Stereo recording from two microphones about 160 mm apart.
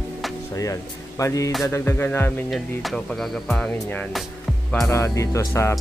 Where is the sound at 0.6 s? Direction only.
20° left (ahead or behind).